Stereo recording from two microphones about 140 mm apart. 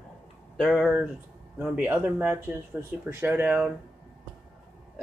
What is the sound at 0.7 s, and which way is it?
Speech, 5° right (ahead or behind).